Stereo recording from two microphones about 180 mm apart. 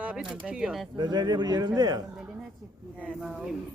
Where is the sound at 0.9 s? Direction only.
25° right (ahead or behind).